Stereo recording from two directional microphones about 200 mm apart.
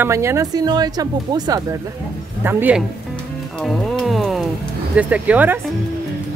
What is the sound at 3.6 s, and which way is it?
Music, centre (ahead or behind).